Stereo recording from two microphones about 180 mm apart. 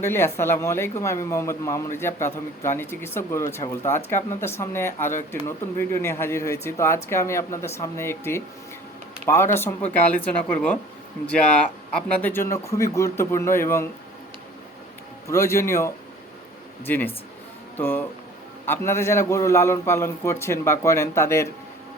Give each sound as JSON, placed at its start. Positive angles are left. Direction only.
{"t": 0.0, "sound": "speech", "side_deg": 15}
{"t": 15.3, "sound": "speech", "side_deg": 15}